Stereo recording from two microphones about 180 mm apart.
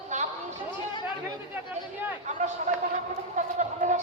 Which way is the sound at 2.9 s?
45° right (ahead or behind).